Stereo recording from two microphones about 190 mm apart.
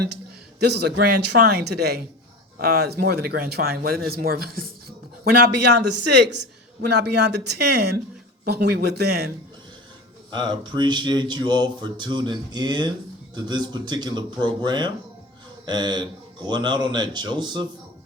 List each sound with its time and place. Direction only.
0.6 s speech: 60° right (ahead or behind)
10.3 s speech: 25° right (ahead or behind)